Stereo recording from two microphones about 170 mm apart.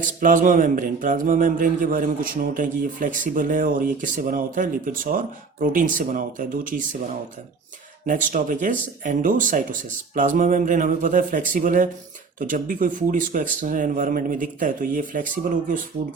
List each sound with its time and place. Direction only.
0.0 s a man's voice: 50° right (ahead or behind)
8.0 s a man's voice: 50° right (ahead or behind)